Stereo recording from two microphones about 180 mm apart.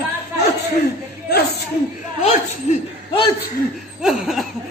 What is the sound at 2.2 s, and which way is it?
Chuckle, 40° left (ahead or behind).